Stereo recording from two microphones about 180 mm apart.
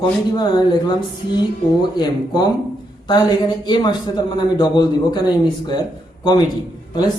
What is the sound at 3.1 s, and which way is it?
Speech, 25° left (ahead or behind).